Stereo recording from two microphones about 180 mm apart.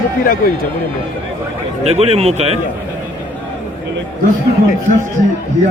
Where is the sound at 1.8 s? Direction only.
35° right (ahead or behind).